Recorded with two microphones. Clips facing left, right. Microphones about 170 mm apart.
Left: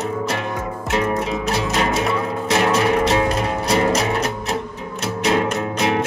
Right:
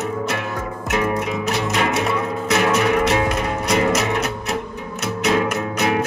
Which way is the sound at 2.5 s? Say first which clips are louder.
Even; 30° left (ahead or behind).